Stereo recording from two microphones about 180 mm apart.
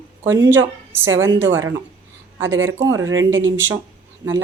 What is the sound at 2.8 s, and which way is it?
Speech, 15° right (ahead or behind).